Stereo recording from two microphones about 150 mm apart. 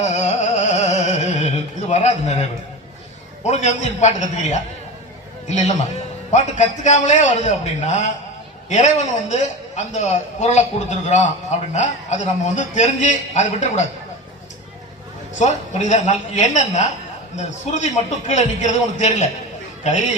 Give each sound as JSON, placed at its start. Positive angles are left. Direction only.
{"t": 0.0, "sound": "music", "side_deg": 50}
{"t": 1.9, "sound": "a sound", "side_deg": 50}
{"t": 3.4, "sound": "a man's voice", "side_deg": 50}
{"t": 15.4, "sound": "a man's voice", "side_deg": 50}